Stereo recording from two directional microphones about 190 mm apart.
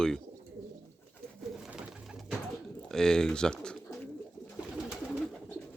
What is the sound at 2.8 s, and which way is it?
Pigeon, 5° left (ahead or behind).